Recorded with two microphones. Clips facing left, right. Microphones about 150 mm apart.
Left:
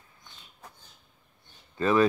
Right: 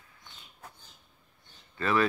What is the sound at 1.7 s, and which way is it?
Speech, 20° left (ahead or behind).